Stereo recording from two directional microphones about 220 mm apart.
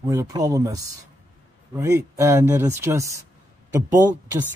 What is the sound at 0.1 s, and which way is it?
Speech, 15° right (ahead or behind).